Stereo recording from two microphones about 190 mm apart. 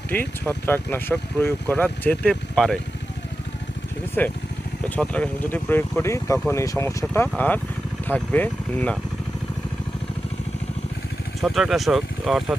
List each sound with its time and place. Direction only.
0.1 s speech: 10° left (ahead or behind)
4.2 s speech: 10° left (ahead or behind)
11.3 s speech: centre (ahead or behind)